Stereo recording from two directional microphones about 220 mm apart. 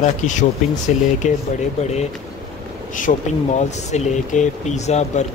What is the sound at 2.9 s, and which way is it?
Speech, 35° left (ahead or behind).